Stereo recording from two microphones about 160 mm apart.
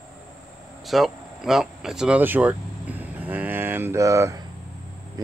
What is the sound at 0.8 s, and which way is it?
Speech, centre (ahead or behind).